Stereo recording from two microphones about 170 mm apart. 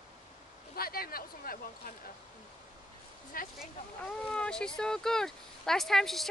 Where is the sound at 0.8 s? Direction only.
60° left (ahead or behind).